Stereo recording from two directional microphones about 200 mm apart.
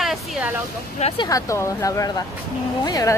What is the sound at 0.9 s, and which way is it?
Speech, 30° left (ahead or behind).